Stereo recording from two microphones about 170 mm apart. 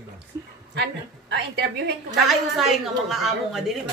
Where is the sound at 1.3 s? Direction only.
75° right (ahead or behind).